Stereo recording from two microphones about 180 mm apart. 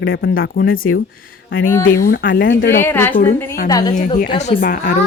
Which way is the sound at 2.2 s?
80° left.